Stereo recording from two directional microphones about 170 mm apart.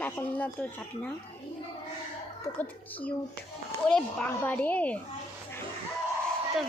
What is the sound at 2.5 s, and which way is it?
Speech, 10° left (ahead or behind).